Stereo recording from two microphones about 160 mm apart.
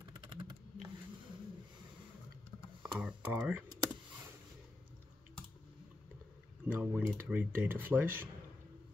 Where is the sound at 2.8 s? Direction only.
5° right (ahead or behind).